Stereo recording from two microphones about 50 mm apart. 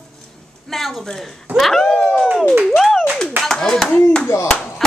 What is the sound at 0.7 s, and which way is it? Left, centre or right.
Speech, centre.